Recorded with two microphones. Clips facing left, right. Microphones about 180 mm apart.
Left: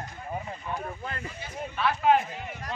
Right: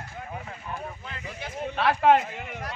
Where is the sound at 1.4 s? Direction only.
75° right (ahead or behind).